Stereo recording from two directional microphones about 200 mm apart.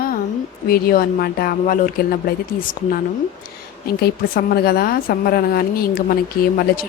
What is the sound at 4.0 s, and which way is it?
A woman's voice, 50° left (ahead or behind).